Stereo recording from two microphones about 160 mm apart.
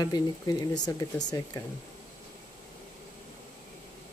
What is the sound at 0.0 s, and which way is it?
Speech, 25° left (ahead or behind).